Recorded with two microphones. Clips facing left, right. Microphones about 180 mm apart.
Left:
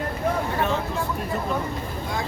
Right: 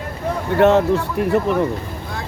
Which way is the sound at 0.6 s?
70° right (ahead or behind).